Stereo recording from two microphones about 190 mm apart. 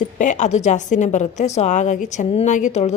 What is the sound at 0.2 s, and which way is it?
Speech, 40° left (ahead or behind).